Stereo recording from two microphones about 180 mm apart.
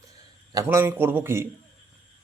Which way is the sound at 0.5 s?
15° right (ahead or behind).